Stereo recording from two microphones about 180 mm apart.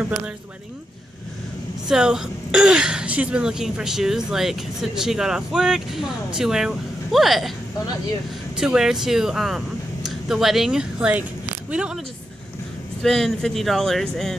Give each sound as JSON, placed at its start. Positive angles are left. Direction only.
{"t": 1.9, "sound": "speech", "side_deg": -5}
{"t": 8.5, "sound": "speech", "side_deg": -5}
{"t": 13.0, "sound": "speech", "side_deg": 0}